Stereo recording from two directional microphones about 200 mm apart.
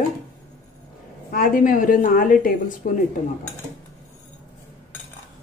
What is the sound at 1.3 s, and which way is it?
Speech, 45° left (ahead or behind).